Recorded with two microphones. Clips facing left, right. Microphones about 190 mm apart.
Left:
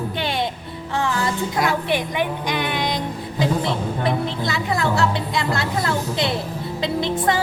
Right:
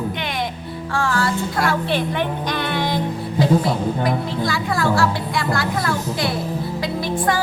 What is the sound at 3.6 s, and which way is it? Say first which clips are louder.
Speech: right 2 dB; 25° left (ahead or behind).